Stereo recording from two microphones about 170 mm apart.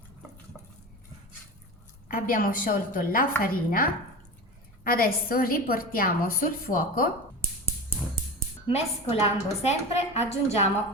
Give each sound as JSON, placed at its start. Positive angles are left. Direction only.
{"t": 2.0, "sound": "a woman's voice", "side_deg": 55}
{"t": 8.7, "sound": "a woman's voice", "side_deg": 40}